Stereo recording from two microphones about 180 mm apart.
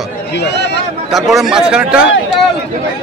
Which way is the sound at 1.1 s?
Centre (ahead or behind).